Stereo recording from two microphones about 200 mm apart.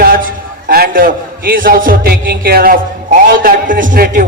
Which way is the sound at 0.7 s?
45° right (ahead or behind).